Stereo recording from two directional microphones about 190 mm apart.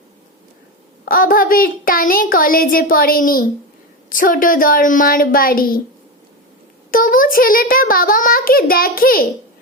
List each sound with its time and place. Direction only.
1.0 s a child's voice: 50° left (ahead or behind)
6.9 s a child's voice: 50° left (ahead or behind)